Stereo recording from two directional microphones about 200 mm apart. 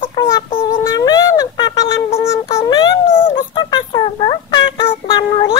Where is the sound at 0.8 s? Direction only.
20° left (ahead or behind).